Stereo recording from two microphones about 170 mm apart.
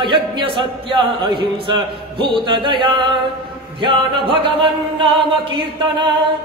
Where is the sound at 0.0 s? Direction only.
30° right (ahead or behind).